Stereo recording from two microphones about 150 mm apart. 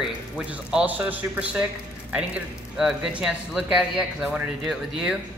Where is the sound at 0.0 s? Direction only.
5° right (ahead or behind).